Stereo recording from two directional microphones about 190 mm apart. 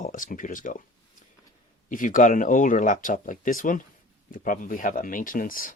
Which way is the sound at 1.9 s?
45° left (ahead or behind).